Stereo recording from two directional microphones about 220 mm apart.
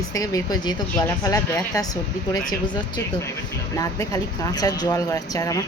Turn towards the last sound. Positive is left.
turn(degrees=15)  # may be behind; listen again after turning